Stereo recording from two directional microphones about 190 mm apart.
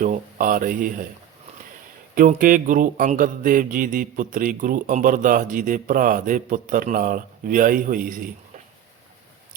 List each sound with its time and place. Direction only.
0.0 s speech: 45° right (ahead or behind)
2.1 s speech: 45° right (ahead or behind)